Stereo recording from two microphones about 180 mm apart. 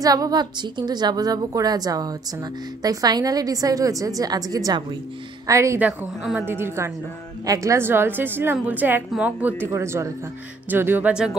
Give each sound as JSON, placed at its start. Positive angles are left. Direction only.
{"t": 0.0, "sound": "a woman's voice", "side_deg": -20}